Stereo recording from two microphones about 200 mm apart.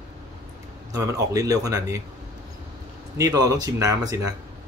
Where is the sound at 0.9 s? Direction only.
15° right (ahead or behind).